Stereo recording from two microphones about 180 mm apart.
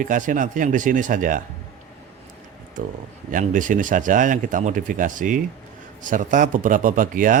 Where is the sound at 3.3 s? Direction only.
45° right (ahead or behind).